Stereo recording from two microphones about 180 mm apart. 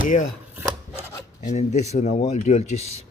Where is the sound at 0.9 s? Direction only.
40° left (ahead or behind).